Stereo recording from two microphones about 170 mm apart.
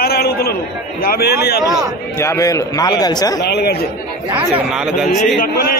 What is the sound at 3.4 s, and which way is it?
Speech, 75° left (ahead or behind).